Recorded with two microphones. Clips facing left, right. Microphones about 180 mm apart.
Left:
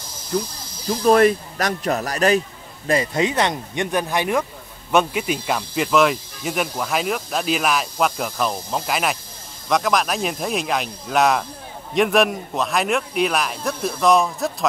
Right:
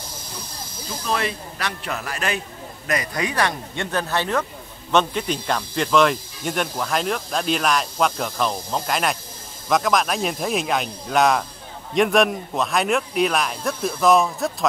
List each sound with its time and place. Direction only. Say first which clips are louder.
0.3 s speech: left 18 dB; 60° left (ahead or behind)
1.0 s speech: left 11 dB; 45° left (ahead or behind)
2.9 s speech: left 5 dB; 25° left (ahead or behind); by 14.7 s centre (ahead or behind)